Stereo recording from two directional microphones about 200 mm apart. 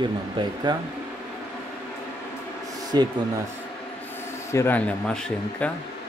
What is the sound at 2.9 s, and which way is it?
Speech, 20° right (ahead or behind).